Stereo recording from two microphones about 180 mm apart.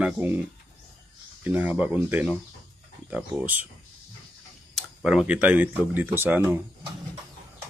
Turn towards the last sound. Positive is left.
turn(degrees=-10)  # may be behind; listen again after turning